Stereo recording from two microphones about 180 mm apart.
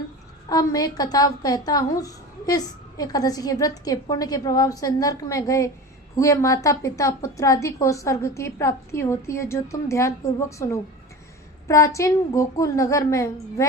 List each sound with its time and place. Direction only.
0.4 s a woman's voice: 20° left (ahead or behind)
11.9 s a woman's voice: 15° left (ahead or behind)